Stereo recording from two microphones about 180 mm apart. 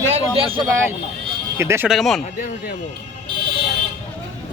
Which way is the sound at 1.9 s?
Centre (ahead or behind).